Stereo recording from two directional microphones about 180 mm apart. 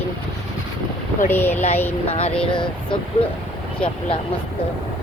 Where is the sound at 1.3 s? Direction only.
10° left (ahead or behind).